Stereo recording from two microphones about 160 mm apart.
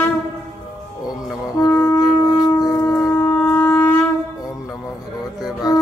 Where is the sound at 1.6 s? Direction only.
15° left (ahead or behind).